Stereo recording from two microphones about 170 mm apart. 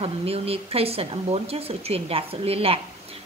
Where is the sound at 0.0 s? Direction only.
35° right (ahead or behind).